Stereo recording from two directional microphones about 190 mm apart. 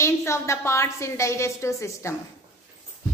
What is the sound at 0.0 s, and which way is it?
A woman's voice, 15° left (ahead or behind).